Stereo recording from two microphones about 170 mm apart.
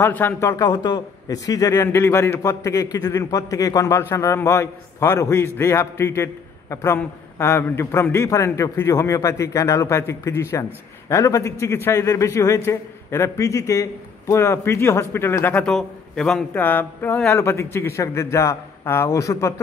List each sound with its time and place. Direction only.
0.0 s a man's voice: 10° left (ahead or behind)